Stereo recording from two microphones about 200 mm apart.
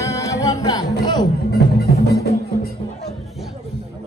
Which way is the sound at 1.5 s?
55° left (ahead or behind).